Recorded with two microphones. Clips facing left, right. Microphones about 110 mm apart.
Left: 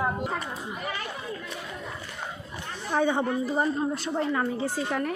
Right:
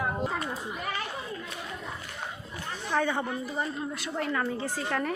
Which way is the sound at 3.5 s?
35° left (ahead or behind).